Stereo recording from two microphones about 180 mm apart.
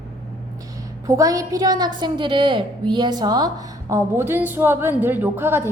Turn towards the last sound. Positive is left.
turn(degrees=-10)  # may be behind; listen again after turning